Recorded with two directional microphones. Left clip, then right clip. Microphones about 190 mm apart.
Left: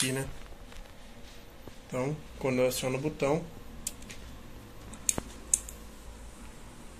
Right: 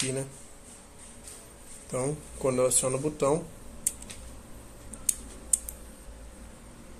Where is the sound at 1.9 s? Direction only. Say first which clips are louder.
Right 2 dB; 15° right (ahead or behind).